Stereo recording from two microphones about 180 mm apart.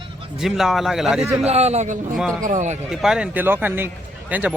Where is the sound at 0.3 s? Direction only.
Centre (ahead or behind).